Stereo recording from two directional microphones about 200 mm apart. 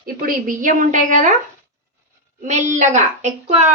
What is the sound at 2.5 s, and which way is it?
A child's voice, 35° right (ahead or behind).